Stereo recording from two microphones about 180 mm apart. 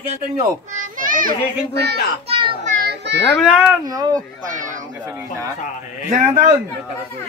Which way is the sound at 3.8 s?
20° right (ahead or behind).